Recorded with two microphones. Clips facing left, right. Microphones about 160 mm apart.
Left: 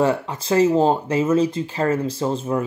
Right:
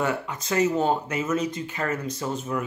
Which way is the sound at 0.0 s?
30° left (ahead or behind).